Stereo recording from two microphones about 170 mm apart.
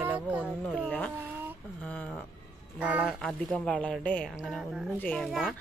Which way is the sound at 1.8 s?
5° left (ahead or behind).